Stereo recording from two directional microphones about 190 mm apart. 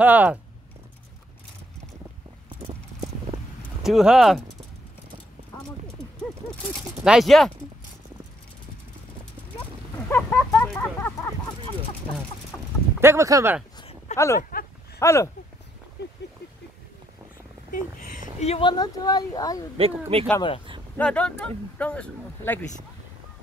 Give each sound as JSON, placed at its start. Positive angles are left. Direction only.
{"t": 0.0, "sound": "speech", "side_deg": -10}
{"t": 3.8, "sound": "speech", "side_deg": 0}
{"t": 7.1, "sound": "speech", "side_deg": 0}
{"t": 9.9, "sound": "a sound", "side_deg": 10}
{"t": 12.5, "sound": "a sound", "side_deg": 10}
{"t": 13.0, "sound": "speech", "side_deg": -15}
{"t": 14.1, "sound": "speech", "side_deg": 15}
{"t": 17.6, "sound": "speech", "side_deg": 45}
{"t": 18.4, "sound": "speech", "side_deg": 30}
{"t": 19.8, "sound": "speech", "side_deg": -30}
{"t": 20.3, "sound": "speech", "side_deg": 25}
{"t": 21.0, "sound": "speech", "side_deg": 5}
{"t": 21.7, "sound": "a sound", "side_deg": 5}